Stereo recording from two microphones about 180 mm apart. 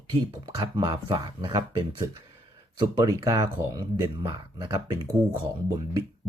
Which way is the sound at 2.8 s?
20° right (ahead or behind).